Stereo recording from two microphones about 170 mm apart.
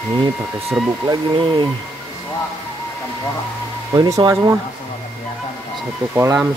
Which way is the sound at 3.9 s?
20° right (ahead or behind).